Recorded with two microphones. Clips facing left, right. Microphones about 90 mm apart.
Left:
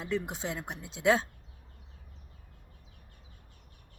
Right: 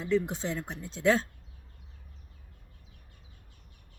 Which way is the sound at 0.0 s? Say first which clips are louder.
Right 5 dB; 10° left (ahead or behind).